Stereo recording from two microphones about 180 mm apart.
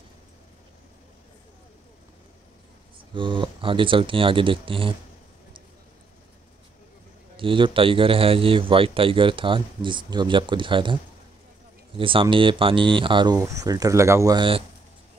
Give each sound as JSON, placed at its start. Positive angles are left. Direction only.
{"t": 3.2, "sound": "a man's voice", "side_deg": -25}
{"t": 7.3, "sound": "a man's voice", "side_deg": -30}
{"t": 12.0, "sound": "a man's voice", "side_deg": -30}